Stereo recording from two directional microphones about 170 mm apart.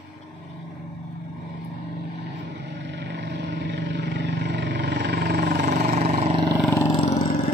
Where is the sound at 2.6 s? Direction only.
90° right.